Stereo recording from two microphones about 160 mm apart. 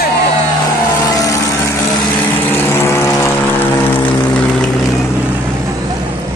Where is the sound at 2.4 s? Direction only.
15° left (ahead or behind).